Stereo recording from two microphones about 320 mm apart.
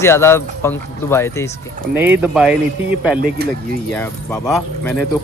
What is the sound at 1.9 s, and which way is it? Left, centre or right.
Speech, centre.